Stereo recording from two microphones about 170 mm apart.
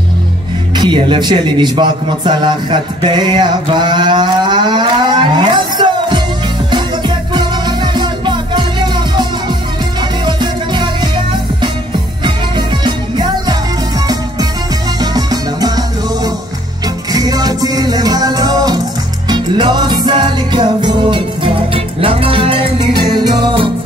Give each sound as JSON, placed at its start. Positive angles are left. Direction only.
{"t": 0.7, "sound": "speech", "side_deg": -30}
{"t": 6.7, "sound": "music", "side_deg": -25}
{"t": 12.2, "sound": "music", "side_deg": -25}
{"t": 15.0, "sound": "music", "side_deg": -25}
{"t": 16.8, "sound": "music", "side_deg": -20}